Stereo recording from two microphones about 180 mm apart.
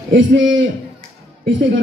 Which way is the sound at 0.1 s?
90° right.